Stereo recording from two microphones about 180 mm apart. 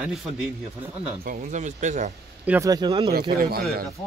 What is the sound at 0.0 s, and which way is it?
Speech, 5° right (ahead or behind).